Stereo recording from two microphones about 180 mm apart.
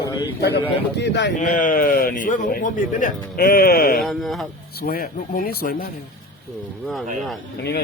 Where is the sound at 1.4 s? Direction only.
45° left (ahead or behind).